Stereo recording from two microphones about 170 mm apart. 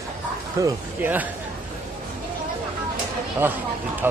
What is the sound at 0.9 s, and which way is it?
Speech, 10° right (ahead or behind).